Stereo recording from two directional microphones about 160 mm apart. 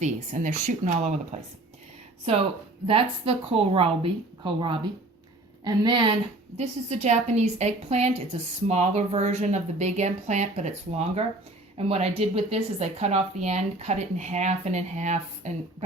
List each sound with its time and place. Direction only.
0.0 s a woman's voice: 50° right (ahead or behind)
2.8 s a woman's voice: 35° right (ahead or behind)
6.6 s a woman's voice: 45° right (ahead or behind)